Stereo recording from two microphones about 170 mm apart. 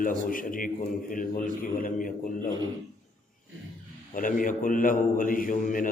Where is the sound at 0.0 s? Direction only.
55° left (ahead or behind).